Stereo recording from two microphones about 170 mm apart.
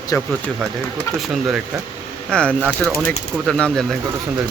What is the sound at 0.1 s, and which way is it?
Speech, 15° left (ahead or behind).